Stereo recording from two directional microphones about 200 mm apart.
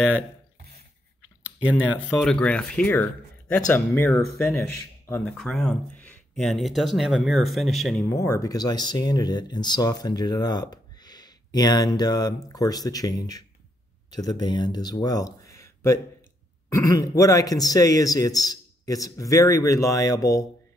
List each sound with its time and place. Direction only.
2.0 s a man's voice: 5° left (ahead or behind)
4.7 s a sound: 15° left (ahead or behind)
5.2 s speech: 5° left (ahead or behind)
8.2 s a man's voice: 15° left (ahead or behind)